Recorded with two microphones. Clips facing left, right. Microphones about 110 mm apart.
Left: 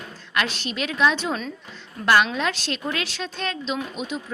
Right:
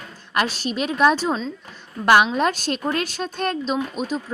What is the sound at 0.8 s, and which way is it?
Speech, 45° right (ahead or behind).